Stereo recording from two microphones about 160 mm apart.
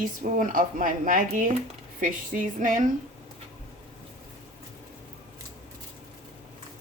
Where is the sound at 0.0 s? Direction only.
55° right (ahead or behind).